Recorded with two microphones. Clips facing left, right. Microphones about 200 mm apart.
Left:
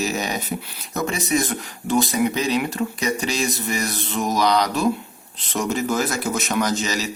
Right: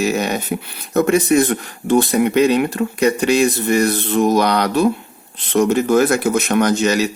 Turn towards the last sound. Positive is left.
turn(degrees=-60)  # may be behind; listen again after turning